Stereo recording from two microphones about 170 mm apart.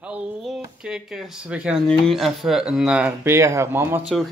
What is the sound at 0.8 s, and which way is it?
Speech, 5° right (ahead or behind).